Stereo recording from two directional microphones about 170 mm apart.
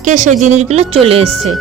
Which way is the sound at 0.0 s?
45° right (ahead or behind).